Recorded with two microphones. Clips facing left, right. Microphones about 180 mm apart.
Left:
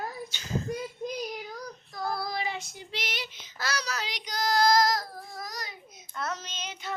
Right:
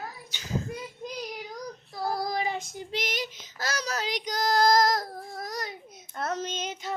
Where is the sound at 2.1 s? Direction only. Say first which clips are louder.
Right 3 dB; 45° right (ahead or behind).